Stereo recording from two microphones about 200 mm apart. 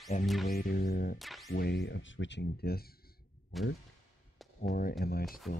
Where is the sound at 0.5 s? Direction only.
50° left (ahead or behind).